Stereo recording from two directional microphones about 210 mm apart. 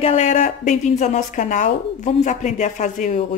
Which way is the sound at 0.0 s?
35° left (ahead or behind).